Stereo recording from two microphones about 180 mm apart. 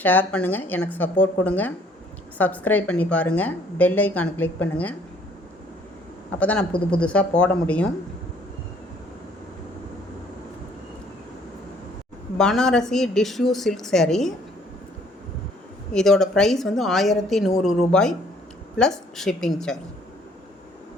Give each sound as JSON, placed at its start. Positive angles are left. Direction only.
{"t": 0.0, "sound": "a woman's voice", "side_deg": 10}
{"t": 6.4, "sound": "a woman's voice", "side_deg": 10}
{"t": 6.7, "sound": "speech", "side_deg": 30}
{"t": 7.0, "sound": "a woman's voice", "side_deg": 5}
{"t": 12.4, "sound": "a woman's voice", "side_deg": 5}
{"t": 15.9, "sound": "a woman's voice", "side_deg": 5}